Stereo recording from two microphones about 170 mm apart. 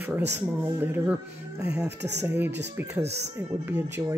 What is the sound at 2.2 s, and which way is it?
Speech, 10° right (ahead or behind).